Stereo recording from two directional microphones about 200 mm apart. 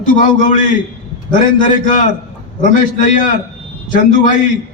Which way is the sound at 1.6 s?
40° left (ahead or behind).